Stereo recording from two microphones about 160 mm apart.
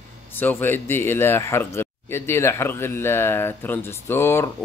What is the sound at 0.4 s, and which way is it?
Speech, 10° left (ahead or behind).